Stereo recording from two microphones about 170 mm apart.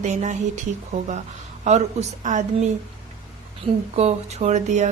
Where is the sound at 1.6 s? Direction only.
40° right (ahead or behind).